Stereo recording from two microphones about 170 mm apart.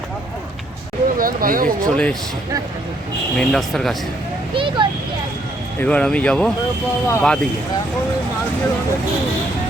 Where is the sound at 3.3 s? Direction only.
5° left (ahead or behind).